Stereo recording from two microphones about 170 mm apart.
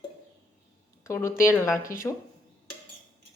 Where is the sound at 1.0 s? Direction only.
15° left (ahead or behind).